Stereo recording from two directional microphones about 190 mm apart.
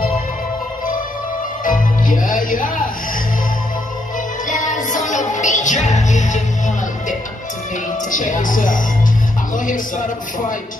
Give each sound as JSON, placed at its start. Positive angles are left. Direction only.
{"t": 1.6, "sound": "music", "side_deg": 45}
{"t": 4.5, "sound": "music", "side_deg": 40}
{"t": 8.1, "sound": "music", "side_deg": 45}
{"t": 9.7, "sound": "speech", "side_deg": 40}